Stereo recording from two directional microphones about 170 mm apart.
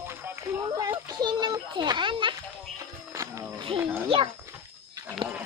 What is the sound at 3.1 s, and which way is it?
Music, 20° right (ahead or behind).